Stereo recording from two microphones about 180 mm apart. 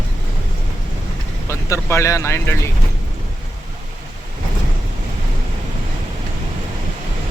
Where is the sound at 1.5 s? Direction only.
15° left (ahead or behind).